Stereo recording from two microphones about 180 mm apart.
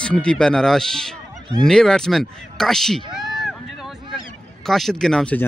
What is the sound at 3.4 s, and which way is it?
Vehicle, centre (ahead or behind).